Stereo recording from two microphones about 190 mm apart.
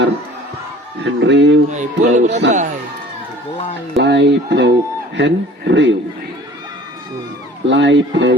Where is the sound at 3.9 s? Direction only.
65° right (ahead or behind).